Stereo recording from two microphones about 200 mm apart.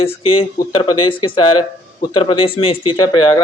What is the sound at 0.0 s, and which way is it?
Speech, 30° left (ahead or behind).